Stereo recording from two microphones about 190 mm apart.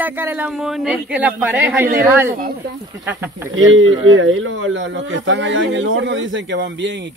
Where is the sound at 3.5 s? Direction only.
90° right; by 6.9 s 70° right (ahead or behind).